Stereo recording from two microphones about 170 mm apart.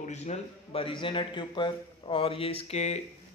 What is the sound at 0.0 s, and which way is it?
A man's voice, 40° left (ahead or behind).